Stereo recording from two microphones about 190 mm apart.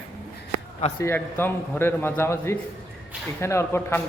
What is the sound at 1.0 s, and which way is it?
A man's voice, 10° left (ahead or behind).